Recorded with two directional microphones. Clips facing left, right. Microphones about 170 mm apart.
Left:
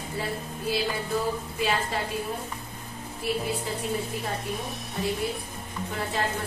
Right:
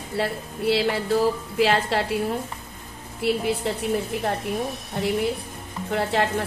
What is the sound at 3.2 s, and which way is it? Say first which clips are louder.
Speech: right 6 dB; 75° right (ahead or behind).